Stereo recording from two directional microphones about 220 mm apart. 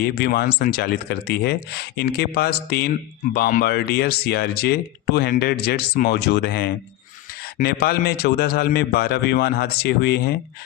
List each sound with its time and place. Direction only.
0.0 s speech: 45° left (ahead or behind)